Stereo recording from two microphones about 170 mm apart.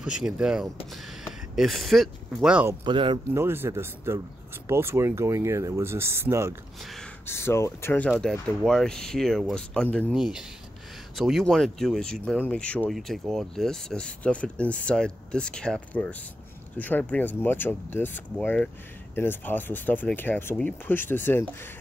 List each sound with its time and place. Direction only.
0.0 s speech: 5° right (ahead or behind)
2.8 s speech: 30° right (ahead or behind)
3.3 s speech: 15° right (ahead or behind)
6.8 s gasp: centre (ahead or behind)
7.2 s speech: 15° left (ahead or behind)